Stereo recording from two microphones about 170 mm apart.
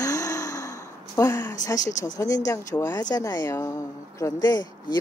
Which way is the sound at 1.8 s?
45° left (ahead or behind).